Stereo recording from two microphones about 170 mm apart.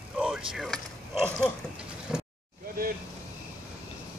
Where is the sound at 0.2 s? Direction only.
5° right (ahead or behind).